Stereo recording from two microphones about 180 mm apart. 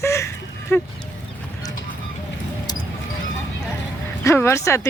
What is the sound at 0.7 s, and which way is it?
Speech, 15° left (ahead or behind).